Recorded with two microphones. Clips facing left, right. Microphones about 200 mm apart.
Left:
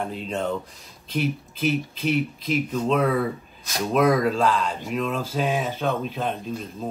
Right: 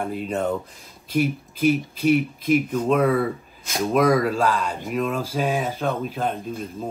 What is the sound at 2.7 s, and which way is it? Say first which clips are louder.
Speech: right 2 dB; 5° right (ahead or behind).